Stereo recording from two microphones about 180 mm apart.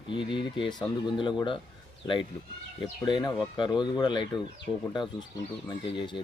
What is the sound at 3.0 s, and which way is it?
Speech, 25° left (ahead or behind).